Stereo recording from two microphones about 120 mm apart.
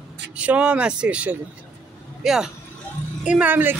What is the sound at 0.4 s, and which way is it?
A man's voice, 10° right (ahead or behind).